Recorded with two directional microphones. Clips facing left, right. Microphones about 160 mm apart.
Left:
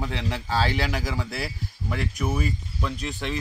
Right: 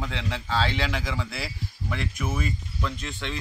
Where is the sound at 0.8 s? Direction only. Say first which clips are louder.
Left 1 dB; 40° left (ahead or behind).